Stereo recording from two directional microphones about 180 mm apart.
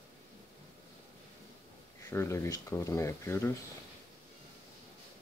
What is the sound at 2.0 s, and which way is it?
Speech, 15° left (ahead or behind).